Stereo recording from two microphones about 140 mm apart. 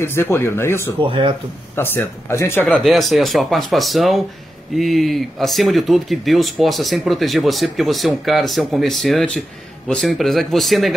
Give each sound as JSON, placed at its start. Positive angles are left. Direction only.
{"t": 0.0, "sound": "speech", "side_deg": 15}
{"t": 1.0, "sound": "speech", "side_deg": -40}
{"t": 1.8, "sound": "speech", "side_deg": 15}
{"t": 2.8, "sound": "speech", "side_deg": 0}